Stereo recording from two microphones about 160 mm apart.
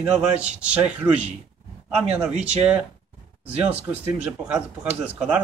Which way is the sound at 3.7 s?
10° right (ahead or behind).